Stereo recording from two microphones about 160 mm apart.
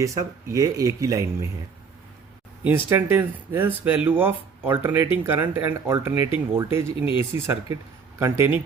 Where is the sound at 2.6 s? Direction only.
15° right (ahead or behind).